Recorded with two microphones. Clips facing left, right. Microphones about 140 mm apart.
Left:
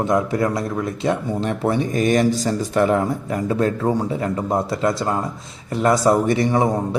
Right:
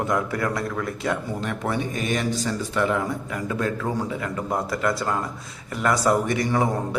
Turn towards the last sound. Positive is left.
turn(degrees=25)  # may be behind; listen again after turning